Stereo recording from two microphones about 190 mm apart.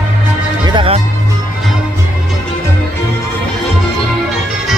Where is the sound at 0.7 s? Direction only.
25° right (ahead or behind).